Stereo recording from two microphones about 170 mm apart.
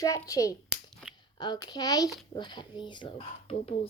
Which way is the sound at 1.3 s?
25° left (ahead or behind).